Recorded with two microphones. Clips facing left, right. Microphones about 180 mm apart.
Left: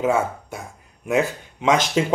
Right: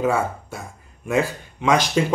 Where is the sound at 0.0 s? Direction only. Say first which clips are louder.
Left 1 dB; 20° left (ahead or behind).